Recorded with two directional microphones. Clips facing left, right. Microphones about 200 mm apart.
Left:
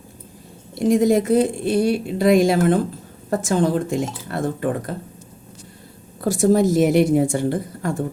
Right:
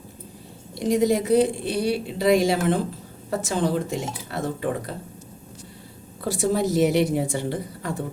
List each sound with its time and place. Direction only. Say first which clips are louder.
0.8 s a woman's voice: left 4 dB; 50° left (ahead or behind)
6.2 s a woman's voice: left 6 dB; 45° left (ahead or behind)